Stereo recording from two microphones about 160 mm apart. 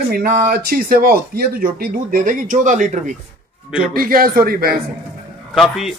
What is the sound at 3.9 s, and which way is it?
Speech, 65° right (ahead or behind).